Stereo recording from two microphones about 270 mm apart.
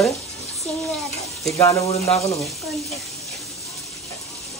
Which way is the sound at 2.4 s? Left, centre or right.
Centre.